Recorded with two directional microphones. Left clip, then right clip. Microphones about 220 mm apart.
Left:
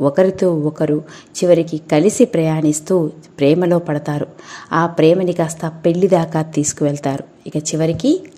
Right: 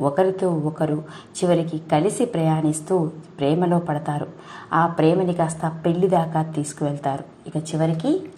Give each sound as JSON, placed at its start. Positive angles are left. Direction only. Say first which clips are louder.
{"t": 0.0, "sound": "a woman's voice", "louder": "left 6 dB", "side_deg": 50}